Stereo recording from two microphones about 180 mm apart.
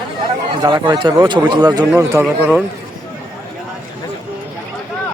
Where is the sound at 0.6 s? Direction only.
25° right (ahead or behind).